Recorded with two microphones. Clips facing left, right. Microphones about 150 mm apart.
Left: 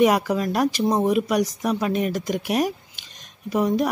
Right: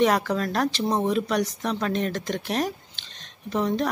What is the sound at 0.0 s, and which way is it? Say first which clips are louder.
Speech: left 3 dB; 10° left (ahead or behind).